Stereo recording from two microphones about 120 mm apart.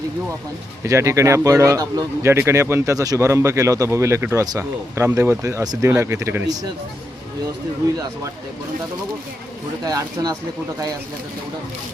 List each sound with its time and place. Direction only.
0.9 s speech: 25° right (ahead or behind)
9.8 s speech: 30° right (ahead or behind)